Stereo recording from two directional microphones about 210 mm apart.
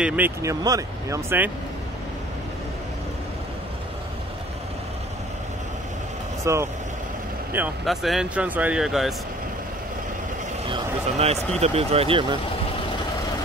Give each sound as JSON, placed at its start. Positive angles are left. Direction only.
{"t": 0.0, "sound": "speech", "side_deg": -10}
{"t": 6.4, "sound": "speech", "side_deg": -15}
{"t": 10.7, "sound": "a sound", "side_deg": -30}
{"t": 11.6, "sound": "speech", "side_deg": -30}